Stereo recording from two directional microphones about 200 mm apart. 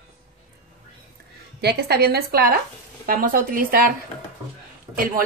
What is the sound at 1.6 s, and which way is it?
Speech, 55° right (ahead or behind).